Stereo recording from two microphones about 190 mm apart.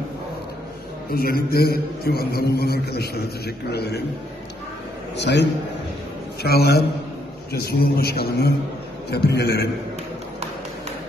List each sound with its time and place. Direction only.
1.1 s a man's voice: 55° left (ahead or behind)
5.1 s a man's voice: 65° left (ahead or behind)